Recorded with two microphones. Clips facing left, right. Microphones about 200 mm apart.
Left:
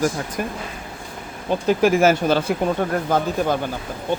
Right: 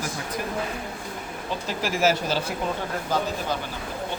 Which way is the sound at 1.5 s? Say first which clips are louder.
Left 12 dB; 55° left (ahead or behind).